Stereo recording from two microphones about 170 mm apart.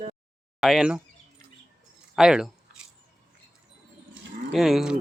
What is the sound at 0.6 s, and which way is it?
Speech, centre (ahead or behind).